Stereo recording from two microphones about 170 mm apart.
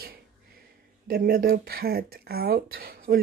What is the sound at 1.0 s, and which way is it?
Speech, 60° right (ahead or behind).